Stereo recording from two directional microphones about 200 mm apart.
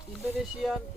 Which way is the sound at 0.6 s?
5° left (ahead or behind).